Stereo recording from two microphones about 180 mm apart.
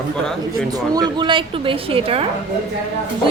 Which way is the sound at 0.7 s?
20° right (ahead or behind).